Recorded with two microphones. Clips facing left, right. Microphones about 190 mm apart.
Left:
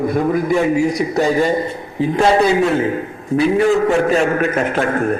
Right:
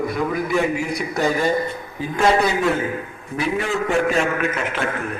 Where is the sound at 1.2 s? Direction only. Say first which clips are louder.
Left 5 dB; 20° left (ahead or behind).